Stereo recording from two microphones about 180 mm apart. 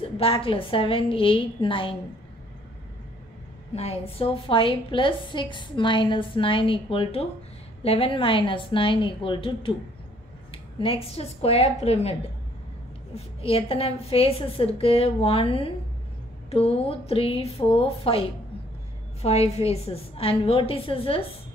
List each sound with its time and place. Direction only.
0.2 s a woman's voice: 30° left (ahead or behind)
3.7 s a woman's voice: 35° left (ahead or behind)
19.2 s a woman's voice: 35° left (ahead or behind)